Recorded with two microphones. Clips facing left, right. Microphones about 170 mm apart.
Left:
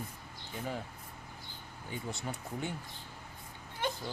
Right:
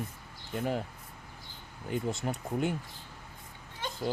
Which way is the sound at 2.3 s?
50° right (ahead or behind).